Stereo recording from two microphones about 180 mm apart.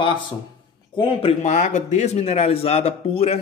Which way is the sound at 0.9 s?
35° left (ahead or behind).